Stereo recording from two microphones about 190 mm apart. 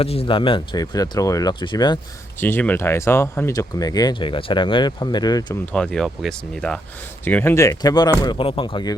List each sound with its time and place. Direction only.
0.0 s speech: 30° left (ahead or behind)
2.4 s speech: 10° left (ahead or behind)
5.7 s speech: 5° left (ahead or behind); by 9.0 s 25° left (ahead or behind)